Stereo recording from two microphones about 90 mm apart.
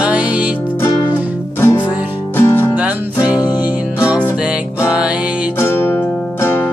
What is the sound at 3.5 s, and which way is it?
Music, 15° right (ahead or behind).